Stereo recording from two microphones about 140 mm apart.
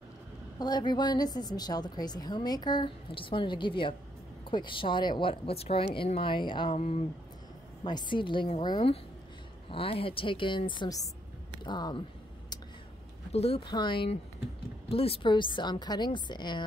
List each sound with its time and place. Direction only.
0.6 s a woman's voice: 30° left (ahead or behind); by 7.1 s 45° left (ahead or behind)
7.8 s a woman's voice: 35° left (ahead or behind)
13.3 s a woman's voice: 45° left (ahead or behind)